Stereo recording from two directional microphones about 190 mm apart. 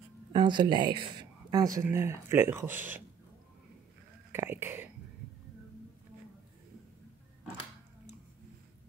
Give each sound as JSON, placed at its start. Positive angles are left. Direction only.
{"t": 0.3, "sound": "speech", "side_deg": -25}
{"t": 4.3, "sound": "speech", "side_deg": -10}